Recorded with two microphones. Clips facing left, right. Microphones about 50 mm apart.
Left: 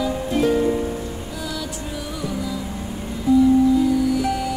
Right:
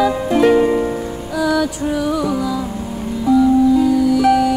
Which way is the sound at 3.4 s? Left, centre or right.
Right.